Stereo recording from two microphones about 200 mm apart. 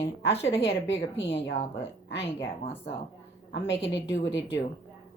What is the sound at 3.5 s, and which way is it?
Speech, 65° left (ahead or behind).